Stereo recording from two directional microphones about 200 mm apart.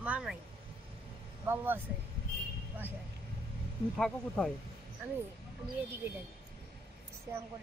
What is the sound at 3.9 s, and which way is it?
Speech, 5° left (ahead or behind).